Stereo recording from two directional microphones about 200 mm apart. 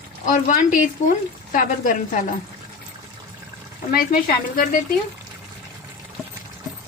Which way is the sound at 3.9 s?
45° left (ahead or behind).